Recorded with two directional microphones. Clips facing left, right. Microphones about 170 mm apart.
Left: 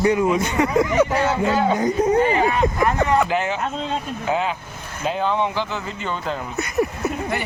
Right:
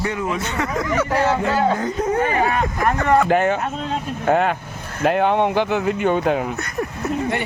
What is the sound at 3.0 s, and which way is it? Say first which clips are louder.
Speech: right 4 dB; 50° right (ahead or behind).